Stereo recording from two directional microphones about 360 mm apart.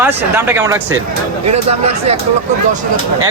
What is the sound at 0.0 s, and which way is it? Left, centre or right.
Speech, centre.